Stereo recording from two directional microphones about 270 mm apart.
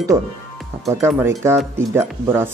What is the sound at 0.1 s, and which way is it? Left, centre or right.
Speech, centre.